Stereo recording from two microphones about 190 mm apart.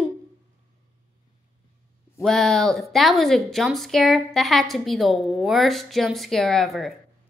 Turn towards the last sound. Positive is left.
turn(degrees=0)  # may be behind; listen again after turning